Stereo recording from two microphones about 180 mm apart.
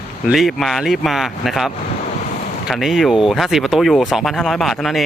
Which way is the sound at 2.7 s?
Centre (ahead or behind).